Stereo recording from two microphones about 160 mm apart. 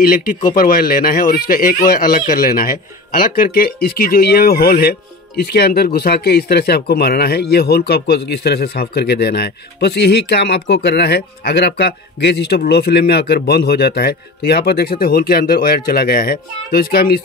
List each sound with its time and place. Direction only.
0.0 s speech: 65° left (ahead or behind)